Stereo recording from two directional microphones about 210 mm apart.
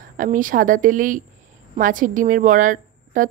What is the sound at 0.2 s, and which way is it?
A woman's voice, 40° right (ahead or behind).